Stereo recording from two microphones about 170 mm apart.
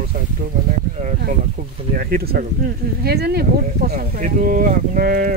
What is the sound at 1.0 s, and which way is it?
Speech, 45° right (ahead or behind).